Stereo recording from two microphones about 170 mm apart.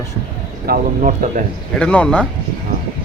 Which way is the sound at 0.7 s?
50° right (ahead or behind).